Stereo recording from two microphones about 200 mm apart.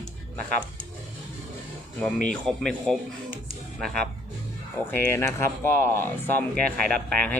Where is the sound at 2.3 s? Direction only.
5° left (ahead or behind).